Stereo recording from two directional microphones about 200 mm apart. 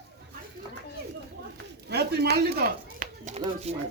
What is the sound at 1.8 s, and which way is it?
Speech, 55° right (ahead or behind).